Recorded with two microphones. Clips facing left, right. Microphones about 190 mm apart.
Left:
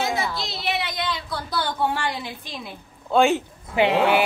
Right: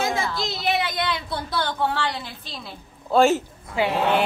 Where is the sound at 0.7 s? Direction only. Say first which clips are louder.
Right 3 dB; 60° right (ahead or behind).